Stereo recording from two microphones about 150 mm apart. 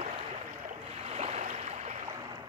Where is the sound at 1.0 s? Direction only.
45° right (ahead or behind).